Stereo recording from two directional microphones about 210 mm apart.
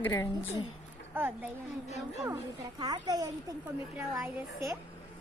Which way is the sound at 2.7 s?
20° right (ahead or behind).